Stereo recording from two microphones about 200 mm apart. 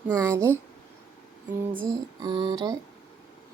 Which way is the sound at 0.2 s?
15° right (ahead or behind).